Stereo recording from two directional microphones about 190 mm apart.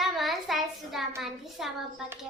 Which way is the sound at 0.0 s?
Centre (ahead or behind).